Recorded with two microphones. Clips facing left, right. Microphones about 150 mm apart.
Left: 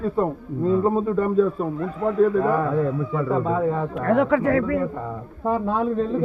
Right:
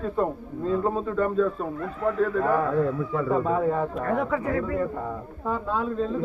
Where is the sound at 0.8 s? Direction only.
15° left (ahead or behind).